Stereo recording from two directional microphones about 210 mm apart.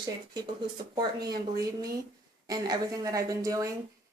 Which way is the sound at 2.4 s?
20° right (ahead or behind).